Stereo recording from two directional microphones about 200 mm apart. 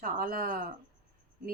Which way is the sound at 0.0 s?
45° right (ahead or behind).